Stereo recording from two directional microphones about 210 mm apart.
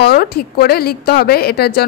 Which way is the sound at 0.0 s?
50° left (ahead or behind).